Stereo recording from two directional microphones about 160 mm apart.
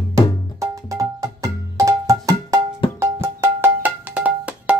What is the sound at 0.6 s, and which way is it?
Music, 20° right (ahead or behind).